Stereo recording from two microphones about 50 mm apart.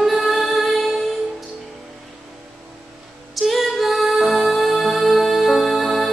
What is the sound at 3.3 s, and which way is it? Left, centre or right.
Music, centre.